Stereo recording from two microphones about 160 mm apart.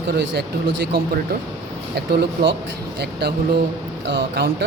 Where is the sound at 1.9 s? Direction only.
90° right.